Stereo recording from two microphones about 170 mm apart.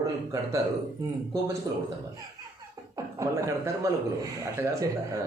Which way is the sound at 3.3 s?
20° right (ahead or behind).